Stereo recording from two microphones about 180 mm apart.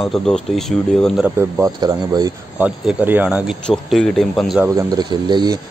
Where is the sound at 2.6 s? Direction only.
10° right (ahead or behind).